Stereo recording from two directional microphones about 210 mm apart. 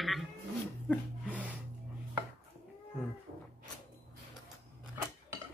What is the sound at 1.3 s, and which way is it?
Snort, 5° right (ahead or behind).